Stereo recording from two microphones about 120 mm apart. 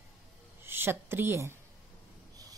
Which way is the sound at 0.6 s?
20° right (ahead or behind).